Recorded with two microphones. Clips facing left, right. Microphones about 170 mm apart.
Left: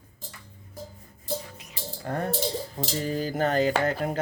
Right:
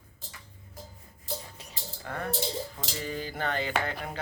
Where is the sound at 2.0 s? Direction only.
35° left (ahead or behind).